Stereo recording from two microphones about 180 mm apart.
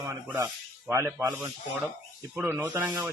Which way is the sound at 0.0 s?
10° right (ahead or behind).